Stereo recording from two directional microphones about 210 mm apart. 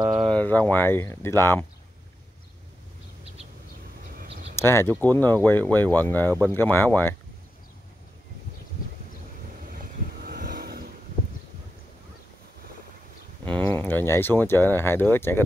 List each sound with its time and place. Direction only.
0.0 s a sound: 25° right (ahead or behind)
0.3 s speech: 10° left (ahead or behind)
4.1 s a sound: 50° right (ahead or behind)
4.6 s speech: 10° left (ahead or behind)
6.2 s speech: 15° right (ahead or behind)
6.5 s speech: 10° left (ahead or behind)
10.2 s vehicle: 45° right (ahead or behind)
13.5 s speech: 10° left (ahead or behind)